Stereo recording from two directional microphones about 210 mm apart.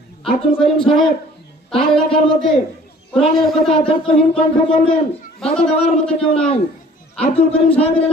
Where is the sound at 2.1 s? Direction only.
25° left (ahead or behind).